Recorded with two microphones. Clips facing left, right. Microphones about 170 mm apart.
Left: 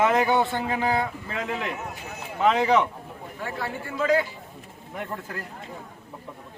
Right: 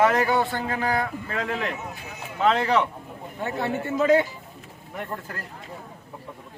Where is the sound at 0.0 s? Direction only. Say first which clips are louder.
Even; 15° left (ahead or behind).